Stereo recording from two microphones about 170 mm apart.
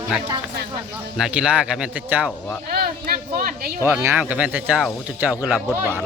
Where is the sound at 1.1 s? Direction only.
5° right (ahead or behind).